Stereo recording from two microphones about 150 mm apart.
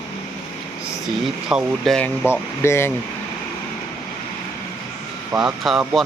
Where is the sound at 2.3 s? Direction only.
15° left (ahead or behind).